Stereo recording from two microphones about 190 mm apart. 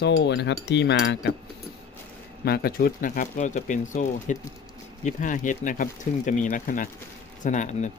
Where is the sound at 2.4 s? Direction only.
55° left (ahead or behind).